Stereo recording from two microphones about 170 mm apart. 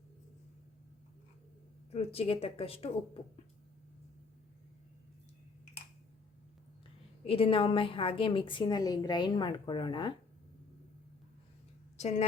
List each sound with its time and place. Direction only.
2.1 s speech: 35° left (ahead or behind)
7.3 s a woman's voice: 35° left (ahead or behind)